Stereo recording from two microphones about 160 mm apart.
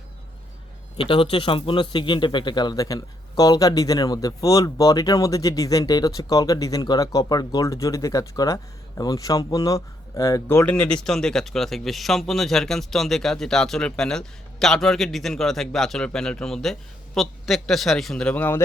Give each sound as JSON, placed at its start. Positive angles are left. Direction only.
{"t": 0.9, "sound": "a man's voice", "side_deg": 35}